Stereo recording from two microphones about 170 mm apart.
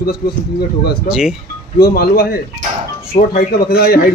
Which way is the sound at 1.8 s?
65° left (ahead or behind).